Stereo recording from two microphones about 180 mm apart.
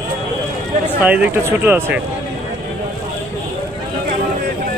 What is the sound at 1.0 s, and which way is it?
Speech, 10° right (ahead or behind).